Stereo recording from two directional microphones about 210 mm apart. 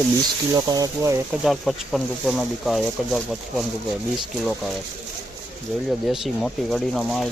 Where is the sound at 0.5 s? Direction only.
20° right (ahead or behind).